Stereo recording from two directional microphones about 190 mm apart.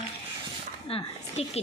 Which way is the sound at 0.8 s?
30° left (ahead or behind).